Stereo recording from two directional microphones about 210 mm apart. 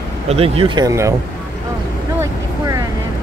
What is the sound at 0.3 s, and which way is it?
Speech, 25° right (ahead or behind).